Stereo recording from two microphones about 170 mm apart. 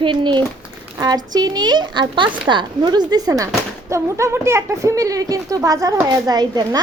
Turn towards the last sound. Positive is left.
turn(degrees=-25)  # may be behind; listen again after turning